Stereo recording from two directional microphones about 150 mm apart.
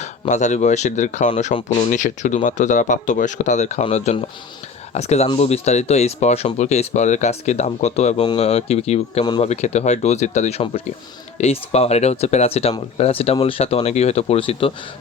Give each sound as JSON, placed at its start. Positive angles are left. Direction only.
{"t": 0.3, "sound": "speech", "side_deg": 50}